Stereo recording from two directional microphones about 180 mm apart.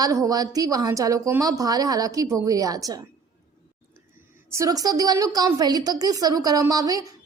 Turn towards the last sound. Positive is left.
turn(degrees=-20)  # may be behind; listen again after turning